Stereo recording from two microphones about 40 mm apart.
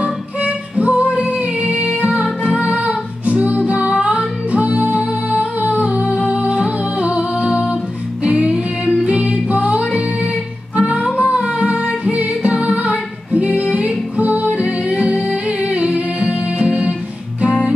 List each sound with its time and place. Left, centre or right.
0.0 s music: right
6.1 s music: right
6.4 s music: right